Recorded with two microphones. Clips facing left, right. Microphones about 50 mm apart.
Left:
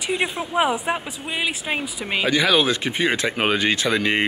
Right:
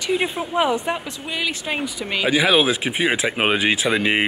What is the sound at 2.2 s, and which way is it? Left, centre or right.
Speech, centre.